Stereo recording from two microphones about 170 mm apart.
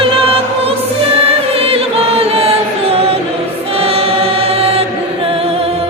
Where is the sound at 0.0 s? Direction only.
35° right (ahead or behind).